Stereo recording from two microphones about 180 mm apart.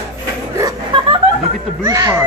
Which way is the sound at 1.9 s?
20° right (ahead or behind).